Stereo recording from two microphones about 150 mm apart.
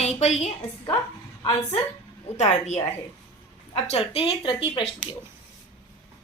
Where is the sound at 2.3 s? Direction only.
50° left (ahead or behind); by 4.9 s 35° left (ahead or behind).